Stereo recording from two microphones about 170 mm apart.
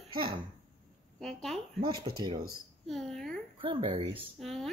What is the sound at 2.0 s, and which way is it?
Speech, 25° right (ahead or behind).